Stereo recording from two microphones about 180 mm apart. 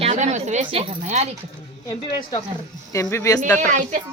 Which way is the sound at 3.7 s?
45° right (ahead or behind).